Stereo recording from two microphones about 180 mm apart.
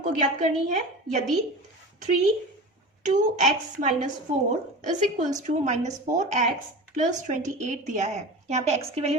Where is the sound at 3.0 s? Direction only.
40° right (ahead or behind).